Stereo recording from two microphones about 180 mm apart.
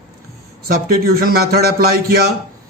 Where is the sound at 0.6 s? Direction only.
55° right (ahead or behind).